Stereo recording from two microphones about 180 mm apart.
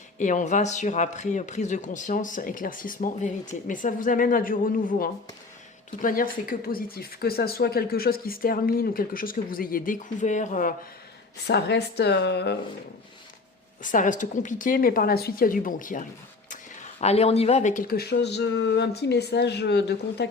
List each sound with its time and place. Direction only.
0.2 s speech: 45° left (ahead or behind)
11.4 s speech: 70° left (ahead or behind)
13.8 s speech: 45° left (ahead or behind)
17.0 s speech: 35° left (ahead or behind); by 20.2 s 70° left (ahead or behind)